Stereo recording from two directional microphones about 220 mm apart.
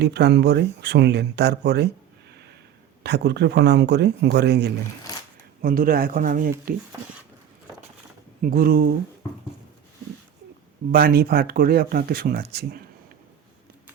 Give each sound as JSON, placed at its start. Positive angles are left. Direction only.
{"t": 0.0, "sound": "speech", "side_deg": -50}
{"t": 3.0, "sound": "speech", "side_deg": -50}
{"t": 8.4, "sound": "speech", "side_deg": -40}
{"t": 10.9, "sound": "speech", "side_deg": -45}